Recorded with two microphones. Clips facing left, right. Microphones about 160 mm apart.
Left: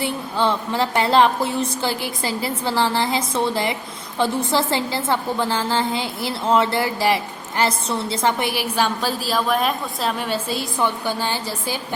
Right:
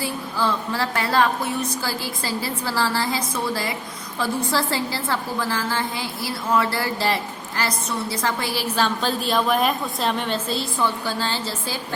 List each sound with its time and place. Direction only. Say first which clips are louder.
0.0 s a woman's voice: left 3 dB; 25° left (ahead or behind)